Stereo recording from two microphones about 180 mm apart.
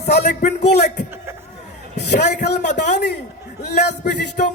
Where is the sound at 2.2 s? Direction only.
65° left (ahead or behind).